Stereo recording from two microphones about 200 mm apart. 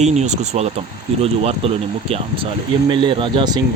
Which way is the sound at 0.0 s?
35° right (ahead or behind).